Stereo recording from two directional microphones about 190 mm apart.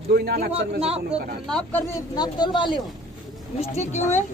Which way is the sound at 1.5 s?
5° left (ahead or behind).